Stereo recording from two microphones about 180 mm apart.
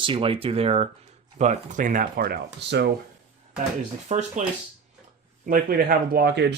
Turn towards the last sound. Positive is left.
turn(degrees=-65)  # may be behind; listen again after turning